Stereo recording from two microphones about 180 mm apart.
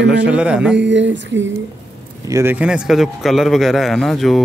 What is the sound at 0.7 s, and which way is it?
Speech, 80° right.